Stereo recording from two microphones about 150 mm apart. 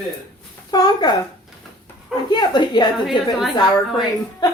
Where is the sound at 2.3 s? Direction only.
30° left (ahead or behind).